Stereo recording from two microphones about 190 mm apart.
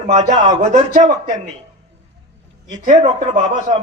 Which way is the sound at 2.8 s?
40° right (ahead or behind).